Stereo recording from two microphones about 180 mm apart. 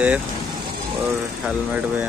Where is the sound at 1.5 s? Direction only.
10° right (ahead or behind).